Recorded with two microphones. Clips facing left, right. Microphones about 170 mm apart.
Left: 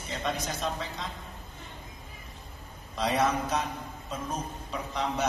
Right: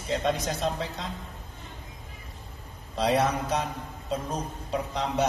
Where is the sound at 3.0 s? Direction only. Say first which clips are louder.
Right 2 dB; 35° right (ahead or behind).